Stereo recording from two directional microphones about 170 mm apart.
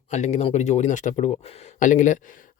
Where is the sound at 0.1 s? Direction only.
40° left (ahead or behind).